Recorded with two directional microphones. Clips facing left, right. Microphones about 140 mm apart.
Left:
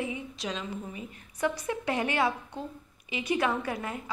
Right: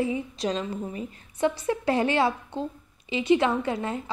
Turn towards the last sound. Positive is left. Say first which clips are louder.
# right 5 dB
turn(degrees=-25)  # may be behind; listen again after turning